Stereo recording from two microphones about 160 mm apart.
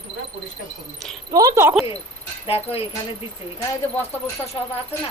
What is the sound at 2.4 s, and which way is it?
Speech, 35° left (ahead or behind).